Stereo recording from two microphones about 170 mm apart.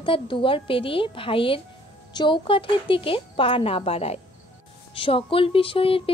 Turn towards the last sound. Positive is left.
turn(degrees=35)  # may be behind; listen again after turning